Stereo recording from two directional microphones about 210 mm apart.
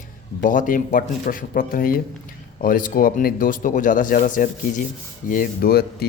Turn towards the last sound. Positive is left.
turn(degrees=45)  # may be behind; listen again after turning